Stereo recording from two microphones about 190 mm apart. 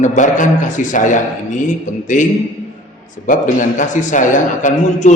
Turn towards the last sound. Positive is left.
turn(degrees=40)  # may be behind; listen again after turning